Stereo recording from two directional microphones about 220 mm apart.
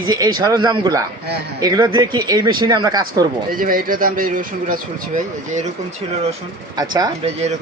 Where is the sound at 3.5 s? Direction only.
40° right (ahead or behind).